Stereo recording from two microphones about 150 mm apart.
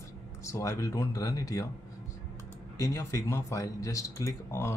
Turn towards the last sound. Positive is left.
turn(degrees=15)  # may be behind; listen again after turning